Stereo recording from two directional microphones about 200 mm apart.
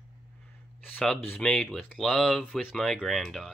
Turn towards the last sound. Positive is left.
turn(degrees=0)  # may be behind; listen again after turning